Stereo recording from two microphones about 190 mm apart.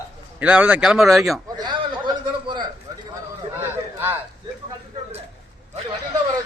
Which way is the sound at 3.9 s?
10° right (ahead or behind).